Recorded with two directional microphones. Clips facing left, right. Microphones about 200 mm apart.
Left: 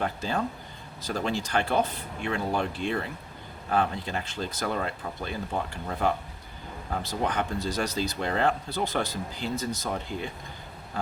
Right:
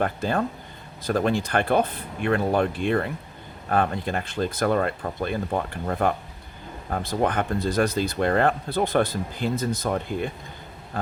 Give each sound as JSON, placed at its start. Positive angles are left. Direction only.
{"t": 0.0, "sound": "speech", "side_deg": -55}